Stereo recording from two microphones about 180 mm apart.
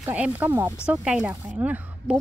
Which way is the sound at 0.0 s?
10° right (ahead or behind).